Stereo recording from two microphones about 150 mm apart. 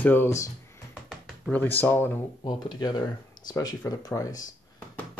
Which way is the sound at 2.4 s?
30° left (ahead or behind).